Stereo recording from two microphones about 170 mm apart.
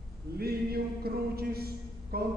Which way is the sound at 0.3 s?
65° right (ahead or behind).